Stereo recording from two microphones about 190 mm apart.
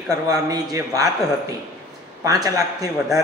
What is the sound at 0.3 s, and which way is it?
Speech, 20° right (ahead or behind).